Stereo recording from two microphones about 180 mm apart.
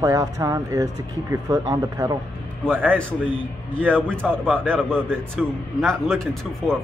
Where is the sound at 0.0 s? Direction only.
20° right (ahead or behind).